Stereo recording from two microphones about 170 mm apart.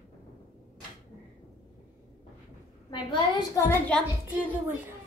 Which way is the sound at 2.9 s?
30° left (ahead or behind).